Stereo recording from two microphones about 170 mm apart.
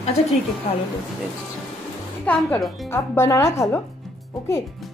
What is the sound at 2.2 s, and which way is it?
Speech, 10° left (ahead or behind).